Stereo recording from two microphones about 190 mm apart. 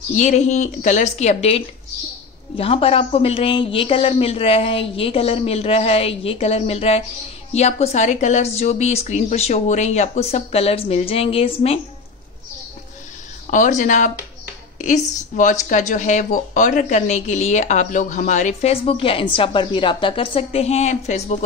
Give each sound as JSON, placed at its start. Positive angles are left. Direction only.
{"t": 0.2, "sound": "a man's voice", "side_deg": 40}
{"t": 13.5, "sound": "a man's voice", "side_deg": 40}